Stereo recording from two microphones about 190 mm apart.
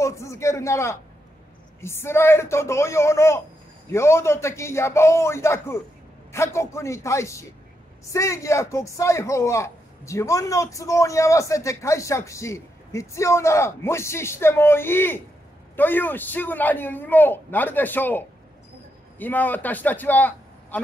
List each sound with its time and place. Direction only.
0.0 s a man's voice: 15° left (ahead or behind)